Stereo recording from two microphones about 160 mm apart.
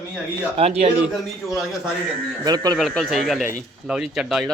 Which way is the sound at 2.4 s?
25° right (ahead or behind).